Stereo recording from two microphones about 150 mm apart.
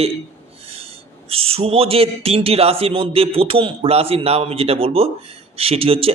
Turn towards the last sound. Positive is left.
turn(degrees=-40)  # may be behind; listen again after turning